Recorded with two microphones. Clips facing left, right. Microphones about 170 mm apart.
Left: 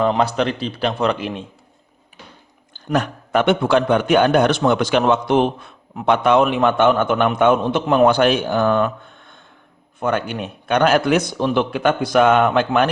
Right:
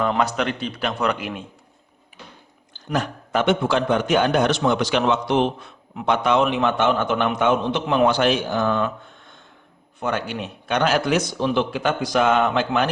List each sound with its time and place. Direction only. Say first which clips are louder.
0.2 s a man's voice: left 3 dB; 30° left (ahead or behind)
2.7 s a man's voice: left 4 dB; 60° left (ahead or behind)
10.0 s a man's voice: left 4 dB; 55° left (ahead or behind)